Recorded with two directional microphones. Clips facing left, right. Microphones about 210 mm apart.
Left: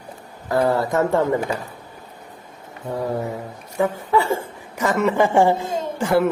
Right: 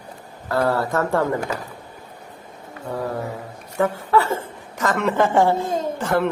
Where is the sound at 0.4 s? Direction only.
15° left (ahead or behind).